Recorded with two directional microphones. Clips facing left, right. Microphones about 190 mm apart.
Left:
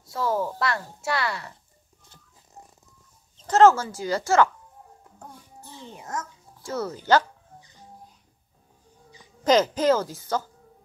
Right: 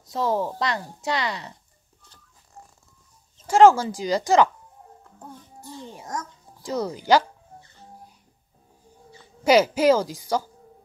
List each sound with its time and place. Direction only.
0.0 s speech: 20° right (ahead or behind)
3.4 s speech: 10° right (ahead or behind)
5.0 s music: 10° left (ahead or behind)
6.6 s speech: 15° right (ahead or behind)
7.6 s music: 15° left (ahead or behind)
9.4 s speech: 10° right (ahead or behind)